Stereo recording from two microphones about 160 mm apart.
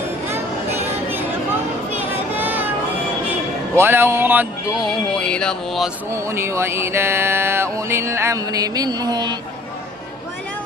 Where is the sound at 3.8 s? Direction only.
15° right (ahead or behind).